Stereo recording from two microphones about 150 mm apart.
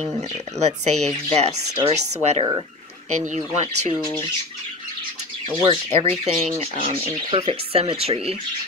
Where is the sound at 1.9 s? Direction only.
50° right (ahead or behind).